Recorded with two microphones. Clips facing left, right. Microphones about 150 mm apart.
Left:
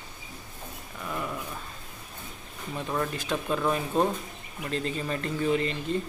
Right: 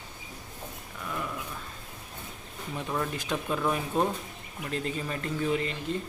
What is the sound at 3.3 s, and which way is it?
Speech, 10° right (ahead or behind).